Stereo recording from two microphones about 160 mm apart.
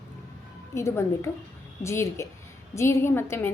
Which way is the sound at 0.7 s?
15° left (ahead or behind).